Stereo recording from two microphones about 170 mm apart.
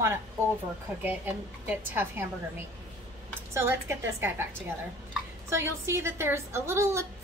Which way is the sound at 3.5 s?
15° right (ahead or behind).